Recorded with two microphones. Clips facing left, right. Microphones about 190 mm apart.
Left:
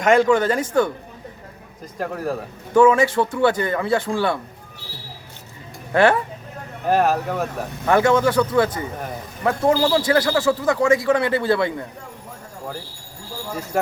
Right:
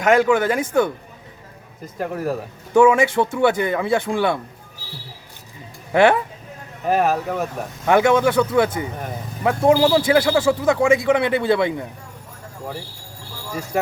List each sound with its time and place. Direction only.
0.0 s a man's voice: 5° right (ahead or behind)
2.0 s a man's voice: centre (ahead or behind); by 4.4 s 20° right (ahead or behind)
5.9 s a man's voice: 15° right (ahead or behind)
6.8 s speech: centre (ahead or behind)
7.9 s a man's voice: 15° right (ahead or behind)